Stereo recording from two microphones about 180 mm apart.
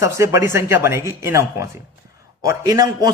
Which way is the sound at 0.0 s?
15° right (ahead or behind).